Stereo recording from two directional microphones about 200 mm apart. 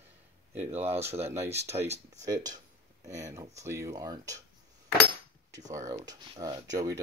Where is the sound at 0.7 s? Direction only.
30° right (ahead or behind).